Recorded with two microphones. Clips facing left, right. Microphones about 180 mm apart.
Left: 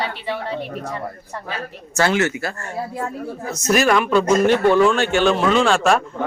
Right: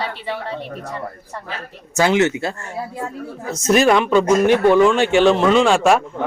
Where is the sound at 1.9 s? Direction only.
15° right (ahead or behind).